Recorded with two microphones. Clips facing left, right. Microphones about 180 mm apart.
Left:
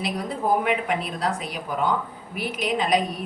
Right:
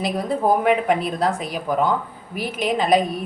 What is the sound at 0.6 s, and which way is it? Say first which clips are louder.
Speech: right 6 dB; 40° right (ahead or behind).